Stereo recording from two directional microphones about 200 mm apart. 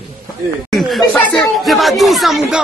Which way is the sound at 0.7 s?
Centre (ahead or behind).